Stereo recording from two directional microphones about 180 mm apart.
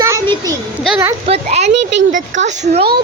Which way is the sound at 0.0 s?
20° right (ahead or behind).